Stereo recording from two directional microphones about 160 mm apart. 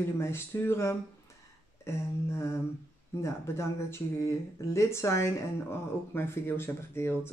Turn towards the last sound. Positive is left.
turn(degrees=15)  # may be behind; listen again after turning